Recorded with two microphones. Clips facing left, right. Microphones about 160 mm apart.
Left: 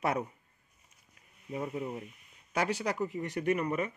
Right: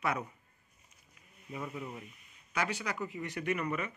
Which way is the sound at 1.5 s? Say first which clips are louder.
Left 5 dB; 30° left (ahead or behind).